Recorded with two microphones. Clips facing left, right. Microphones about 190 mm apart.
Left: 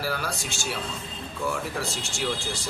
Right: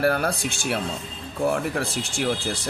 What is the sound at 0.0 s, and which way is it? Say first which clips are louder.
Speech: right 8 dB; 55° right (ahead or behind).